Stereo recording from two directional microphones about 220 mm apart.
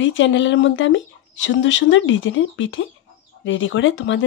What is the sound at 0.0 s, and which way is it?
Speech, 55° left (ahead or behind).